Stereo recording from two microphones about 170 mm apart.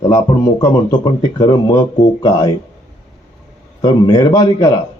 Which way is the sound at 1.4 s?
25° left (ahead or behind).